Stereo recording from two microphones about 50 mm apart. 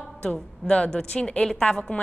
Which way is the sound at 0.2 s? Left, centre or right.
Left.